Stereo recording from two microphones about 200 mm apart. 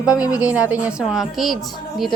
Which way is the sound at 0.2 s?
5° right (ahead or behind).